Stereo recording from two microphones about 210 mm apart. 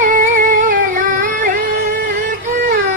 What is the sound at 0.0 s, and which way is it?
Music, 40° right (ahead or behind).